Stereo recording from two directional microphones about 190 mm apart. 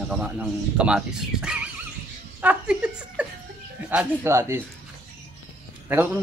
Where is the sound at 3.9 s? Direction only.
10° right (ahead or behind).